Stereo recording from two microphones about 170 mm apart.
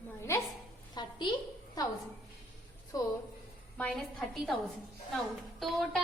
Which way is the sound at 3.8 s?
5° left (ahead or behind).